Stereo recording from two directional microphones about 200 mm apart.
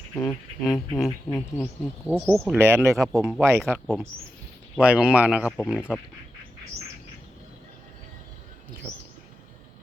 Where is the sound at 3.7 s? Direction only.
5° left (ahead or behind).